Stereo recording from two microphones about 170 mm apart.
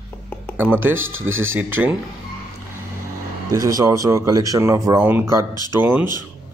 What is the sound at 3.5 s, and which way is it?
Speech, 20° right (ahead or behind).